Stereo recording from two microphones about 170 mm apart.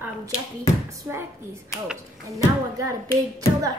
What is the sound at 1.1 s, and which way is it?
Speech, 10° right (ahead or behind).